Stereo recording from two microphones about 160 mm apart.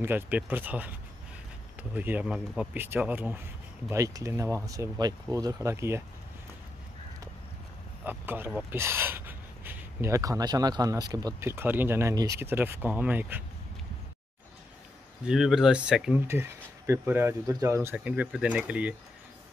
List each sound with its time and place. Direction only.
0.0 s speech: 10° right (ahead or behind)
8.0 s speech: 10° right (ahead or behind)
15.2 s speech: 5° right (ahead or behind)